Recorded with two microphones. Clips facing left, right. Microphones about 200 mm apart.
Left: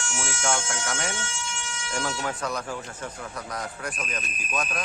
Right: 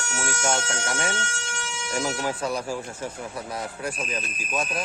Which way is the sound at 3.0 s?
25° right (ahead or behind).